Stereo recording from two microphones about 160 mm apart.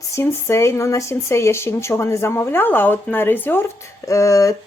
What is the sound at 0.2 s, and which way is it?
A woman's voice, 15° left (ahead or behind).